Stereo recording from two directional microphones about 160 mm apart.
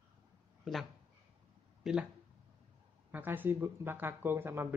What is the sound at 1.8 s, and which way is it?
Speech, centre (ahead or behind).